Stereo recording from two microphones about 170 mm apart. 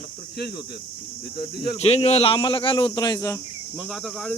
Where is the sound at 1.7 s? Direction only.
35° left (ahead or behind); by 3.4 s 20° left (ahead or behind).